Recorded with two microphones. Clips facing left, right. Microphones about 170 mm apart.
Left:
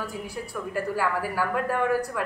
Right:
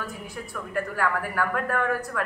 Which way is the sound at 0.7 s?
5° left (ahead or behind).